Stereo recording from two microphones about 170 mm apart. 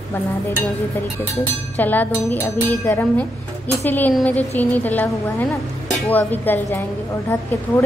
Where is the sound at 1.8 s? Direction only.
10° left (ahead or behind).